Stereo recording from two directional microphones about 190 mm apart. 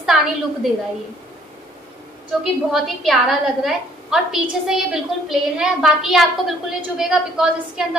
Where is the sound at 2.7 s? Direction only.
Centre (ahead or behind).